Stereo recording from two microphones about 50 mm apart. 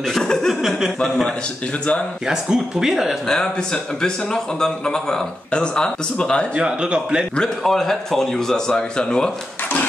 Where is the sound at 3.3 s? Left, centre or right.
Centre.